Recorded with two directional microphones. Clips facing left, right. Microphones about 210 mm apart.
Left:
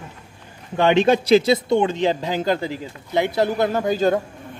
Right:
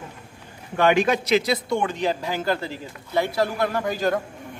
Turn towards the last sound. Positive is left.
turn(degrees=25)  # may be behind; listen again after turning